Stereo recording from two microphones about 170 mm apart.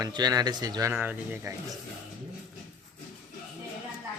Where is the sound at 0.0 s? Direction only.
25° right (ahead or behind).